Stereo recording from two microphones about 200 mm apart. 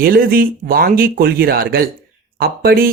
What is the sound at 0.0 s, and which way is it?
Speech, 50° right (ahead or behind).